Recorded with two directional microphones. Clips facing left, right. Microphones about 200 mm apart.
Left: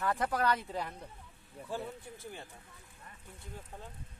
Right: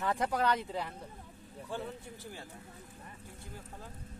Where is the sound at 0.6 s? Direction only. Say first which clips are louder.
Right 1 dB; 10° right (ahead or behind).